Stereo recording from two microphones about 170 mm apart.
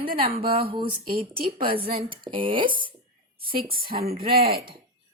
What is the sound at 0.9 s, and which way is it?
A woman's voice, 60° right (ahead or behind).